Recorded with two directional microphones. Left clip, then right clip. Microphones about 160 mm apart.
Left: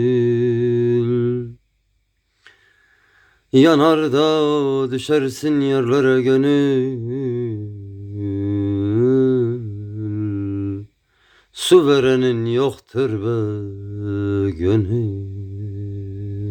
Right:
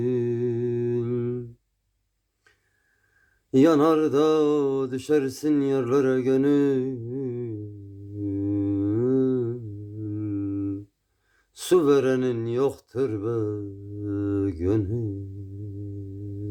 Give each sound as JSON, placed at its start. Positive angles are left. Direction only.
{"t": 0.0, "sound": "mantra", "side_deg": 20}
{"t": 3.5, "sound": "mantra", "side_deg": 20}
{"t": 10.0, "sound": "humming", "side_deg": 25}
{"t": 11.5, "sound": "mantra", "side_deg": 20}